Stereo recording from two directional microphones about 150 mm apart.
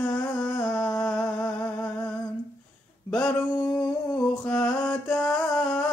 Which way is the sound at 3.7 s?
15° left (ahead or behind).